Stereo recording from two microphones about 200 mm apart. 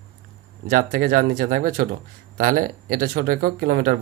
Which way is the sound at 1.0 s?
45° right (ahead or behind).